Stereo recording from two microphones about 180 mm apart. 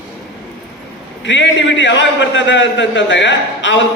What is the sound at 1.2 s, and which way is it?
A man's voice, 90° left.